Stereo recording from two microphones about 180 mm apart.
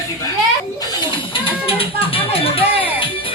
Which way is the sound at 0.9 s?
30° left (ahead or behind).